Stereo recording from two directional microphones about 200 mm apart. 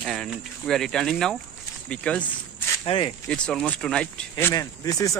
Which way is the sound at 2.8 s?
25° left (ahead or behind).